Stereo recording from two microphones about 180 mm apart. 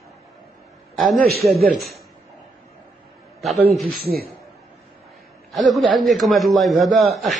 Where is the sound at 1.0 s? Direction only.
60° right (ahead or behind).